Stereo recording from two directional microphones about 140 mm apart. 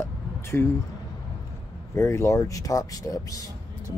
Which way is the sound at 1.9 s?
20° left (ahead or behind).